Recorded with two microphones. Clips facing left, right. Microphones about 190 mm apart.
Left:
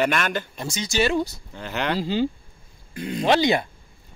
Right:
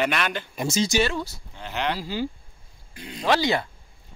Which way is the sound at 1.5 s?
50° left (ahead or behind).